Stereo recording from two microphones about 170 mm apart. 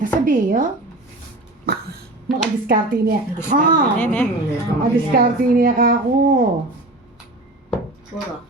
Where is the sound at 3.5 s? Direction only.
45° right (ahead or behind).